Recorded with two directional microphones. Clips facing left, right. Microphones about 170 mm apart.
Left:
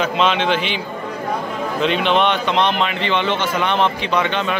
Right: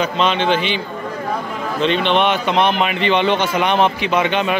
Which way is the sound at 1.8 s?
5° left (ahead or behind).